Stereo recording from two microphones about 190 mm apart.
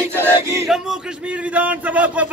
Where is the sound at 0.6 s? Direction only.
Centre (ahead or behind).